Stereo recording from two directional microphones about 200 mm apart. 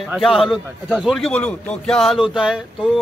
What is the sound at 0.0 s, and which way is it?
A man's voice, centre (ahead or behind).